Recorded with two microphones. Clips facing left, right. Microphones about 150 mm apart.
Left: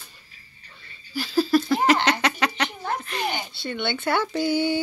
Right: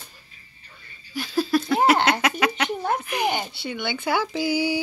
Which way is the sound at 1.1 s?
Centre (ahead or behind).